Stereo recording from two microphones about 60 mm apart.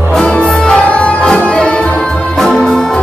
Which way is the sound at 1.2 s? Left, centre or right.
Centre.